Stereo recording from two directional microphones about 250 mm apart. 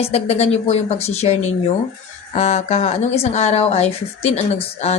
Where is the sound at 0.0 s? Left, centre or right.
Left.